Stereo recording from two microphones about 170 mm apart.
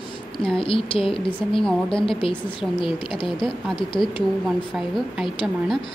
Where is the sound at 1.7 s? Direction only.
5° left (ahead or behind).